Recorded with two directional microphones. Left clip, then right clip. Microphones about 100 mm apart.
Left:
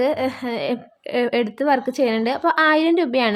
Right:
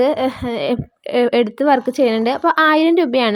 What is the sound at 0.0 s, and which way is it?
Speech, 35° right (ahead or behind).